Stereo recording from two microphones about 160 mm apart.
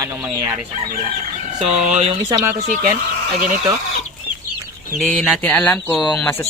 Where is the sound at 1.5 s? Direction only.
45° right (ahead or behind).